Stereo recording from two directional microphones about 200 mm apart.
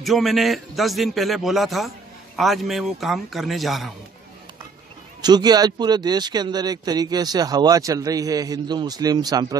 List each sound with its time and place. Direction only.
0.0 s a man's voice: centre (ahead or behind)
5.2 s speech: 20° right (ahead or behind)